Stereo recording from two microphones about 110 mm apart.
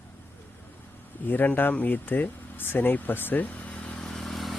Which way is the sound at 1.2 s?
15° left (ahead or behind).